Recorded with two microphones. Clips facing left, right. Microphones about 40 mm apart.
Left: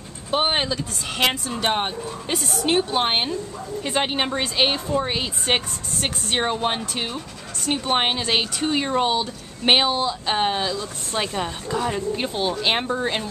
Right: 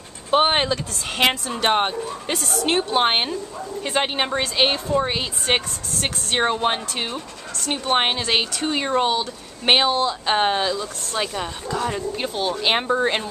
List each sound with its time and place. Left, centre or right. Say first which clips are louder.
0.3 s speech: right 4 dB; centre
2.3 s speech: even; centre
2.6 s speech: right 2 dB; centre
11.1 s speech: left 1 dB; centre